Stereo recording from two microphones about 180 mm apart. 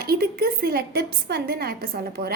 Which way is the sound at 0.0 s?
60° right (ahead or behind).